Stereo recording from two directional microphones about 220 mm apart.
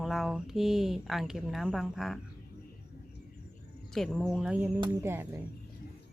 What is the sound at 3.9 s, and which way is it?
Speech, 5° left (ahead or behind).